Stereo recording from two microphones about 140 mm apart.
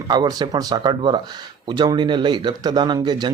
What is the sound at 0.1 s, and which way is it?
Speech, 30° right (ahead or behind).